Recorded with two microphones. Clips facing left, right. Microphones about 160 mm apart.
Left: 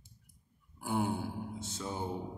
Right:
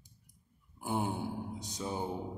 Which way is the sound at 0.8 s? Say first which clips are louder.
Left 1 dB; 20° right (ahead or behind).